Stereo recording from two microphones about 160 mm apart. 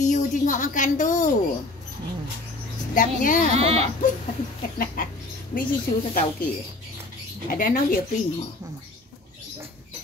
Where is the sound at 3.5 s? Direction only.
40° right (ahead or behind).